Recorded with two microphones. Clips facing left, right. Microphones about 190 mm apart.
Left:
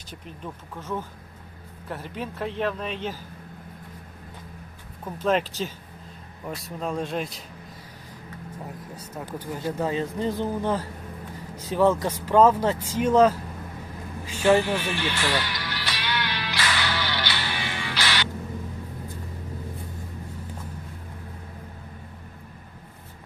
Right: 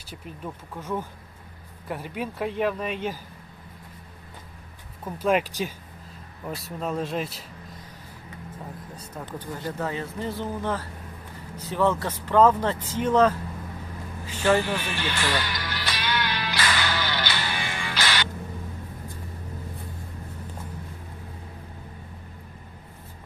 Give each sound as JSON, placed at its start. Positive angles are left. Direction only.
{"t": 0.1, "sound": "speech", "side_deg": -10}
{"t": 5.0, "sound": "speech", "side_deg": -10}
{"t": 6.4, "sound": "a man's voice", "side_deg": 0}
{"t": 8.6, "sound": "speech", "side_deg": 10}
{"t": 14.3, "sound": "speech", "side_deg": 10}
{"t": 15.4, "sound": "music", "side_deg": -45}